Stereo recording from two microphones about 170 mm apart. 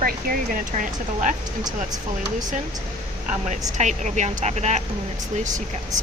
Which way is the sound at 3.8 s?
45° right (ahead or behind).